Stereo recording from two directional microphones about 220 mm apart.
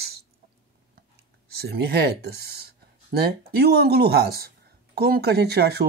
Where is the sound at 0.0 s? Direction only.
45° right (ahead or behind).